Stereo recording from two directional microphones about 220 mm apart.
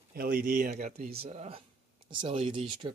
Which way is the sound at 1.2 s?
30° right (ahead or behind).